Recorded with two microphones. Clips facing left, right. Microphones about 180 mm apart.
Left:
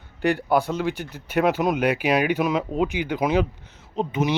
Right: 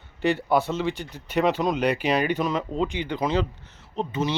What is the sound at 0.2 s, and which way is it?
Speech, centre (ahead or behind).